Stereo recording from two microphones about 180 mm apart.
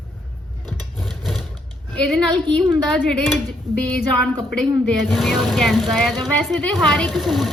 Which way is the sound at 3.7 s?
20° right (ahead or behind).